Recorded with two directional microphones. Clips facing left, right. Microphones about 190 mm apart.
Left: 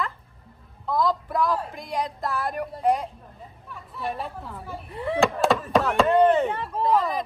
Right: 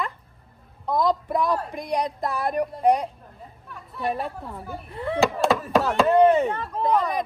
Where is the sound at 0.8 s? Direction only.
20° right (ahead or behind).